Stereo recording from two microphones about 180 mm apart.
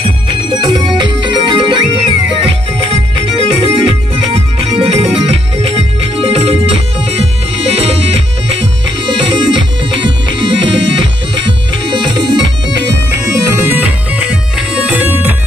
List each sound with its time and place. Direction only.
0.6 s music: 25° right (ahead or behind)
13.6 s music: 10° right (ahead or behind)